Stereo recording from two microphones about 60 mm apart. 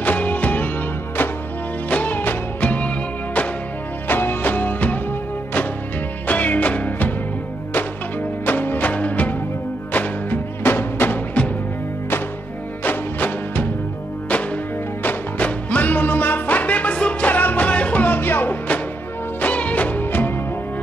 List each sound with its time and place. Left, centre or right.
0.0 s music: left
1.9 s music: left
4.1 s music: left
6.2 s music: left
8.5 s music: left
12.8 s music: left
15.0 s music: left